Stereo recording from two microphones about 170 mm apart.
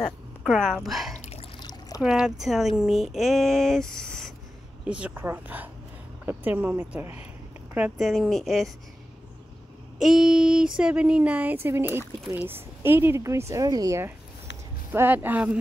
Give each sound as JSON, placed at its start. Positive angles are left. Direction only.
{"t": 0.0, "sound": "speech", "side_deg": 0}
{"t": 1.6, "sound": "pour", "side_deg": 20}
{"t": 2.0, "sound": "a sound", "side_deg": -5}
{"t": 4.8, "sound": "speech", "side_deg": -5}
{"t": 8.1, "sound": "a sound", "side_deg": 0}
{"t": 10.0, "sound": "speech", "side_deg": 0}